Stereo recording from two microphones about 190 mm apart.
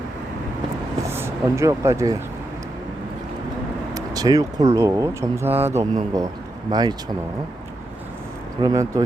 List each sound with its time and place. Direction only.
1.0 s speech: 15° right (ahead or behind)
3.9 s speech: 20° right (ahead or behind)
8.6 s speech: 20° right (ahead or behind)